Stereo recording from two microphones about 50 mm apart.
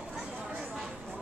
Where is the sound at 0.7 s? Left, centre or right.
Centre.